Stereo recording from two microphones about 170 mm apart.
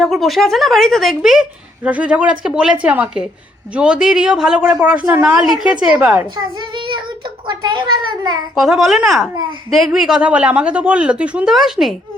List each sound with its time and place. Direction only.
0.0 s a child's voice: centre (ahead or behind)
6.3 s a child's voice: 30° right (ahead or behind)
8.5 s a child's voice: centre (ahead or behind)